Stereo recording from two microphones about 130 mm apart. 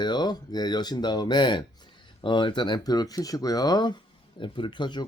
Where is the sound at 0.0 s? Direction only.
35° left (ahead or behind).